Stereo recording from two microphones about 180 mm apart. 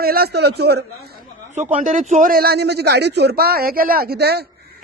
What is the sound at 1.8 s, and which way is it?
Speech, 45° right (ahead or behind).